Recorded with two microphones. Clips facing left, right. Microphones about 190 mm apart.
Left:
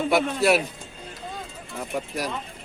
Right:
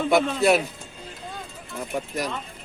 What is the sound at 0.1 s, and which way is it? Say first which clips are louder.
Speech: right 2 dB; 5° left (ahead or behind).